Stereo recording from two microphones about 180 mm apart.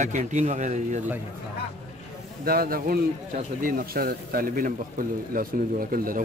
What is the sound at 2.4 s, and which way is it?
A man's voice, 55° right (ahead or behind).